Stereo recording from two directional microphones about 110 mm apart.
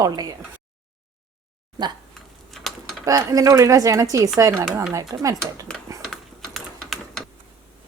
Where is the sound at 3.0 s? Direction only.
30° right (ahead or behind).